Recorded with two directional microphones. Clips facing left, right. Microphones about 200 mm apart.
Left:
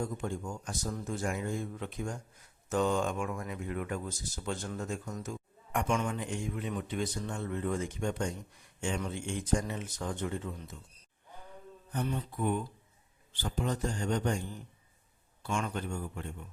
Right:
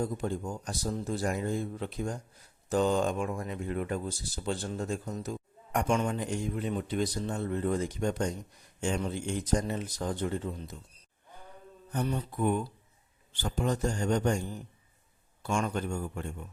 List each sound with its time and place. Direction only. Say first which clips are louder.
0.0 s speech: right 3 dB; 35° right (ahead or behind)
11.9 s speech: right 3 dB; 45° right (ahead or behind)
15.4 s speech: right 4 dB; 45° right (ahead or behind)